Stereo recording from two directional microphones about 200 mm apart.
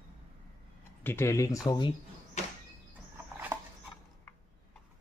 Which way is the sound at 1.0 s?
10° left (ahead or behind).